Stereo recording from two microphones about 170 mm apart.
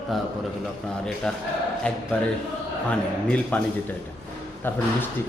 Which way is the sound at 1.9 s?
5° left (ahead or behind).